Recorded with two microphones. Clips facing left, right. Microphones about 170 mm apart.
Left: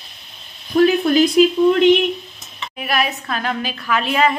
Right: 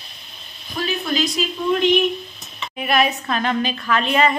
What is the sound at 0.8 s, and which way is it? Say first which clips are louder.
Speech: left 9 dB; 55° left (ahead or behind).